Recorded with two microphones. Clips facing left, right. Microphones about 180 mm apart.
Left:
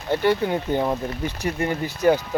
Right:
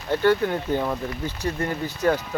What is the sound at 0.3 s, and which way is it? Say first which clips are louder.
Speech: right 1 dB; 15° left (ahead or behind).